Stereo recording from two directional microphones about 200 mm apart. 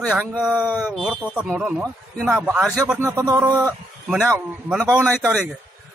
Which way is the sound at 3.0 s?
15° right (ahead or behind).